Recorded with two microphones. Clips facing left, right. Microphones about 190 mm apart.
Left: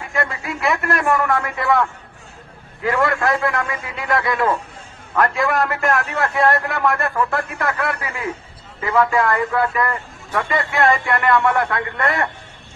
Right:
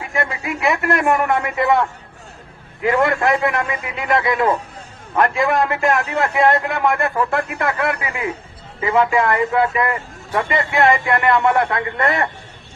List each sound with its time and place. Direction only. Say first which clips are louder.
0.0 s a man's voice: right 1 dB; 20° right (ahead or behind)